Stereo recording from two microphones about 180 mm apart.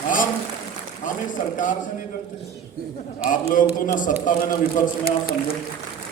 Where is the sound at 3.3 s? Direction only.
50° left (ahead or behind).